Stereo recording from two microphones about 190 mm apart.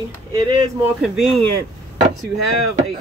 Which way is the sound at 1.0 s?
Centre (ahead or behind).